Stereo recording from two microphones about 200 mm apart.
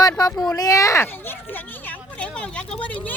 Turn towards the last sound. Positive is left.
turn(degrees=5)  # may be behind; listen again after turning